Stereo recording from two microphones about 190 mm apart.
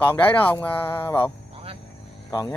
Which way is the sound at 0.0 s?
10° left (ahead or behind).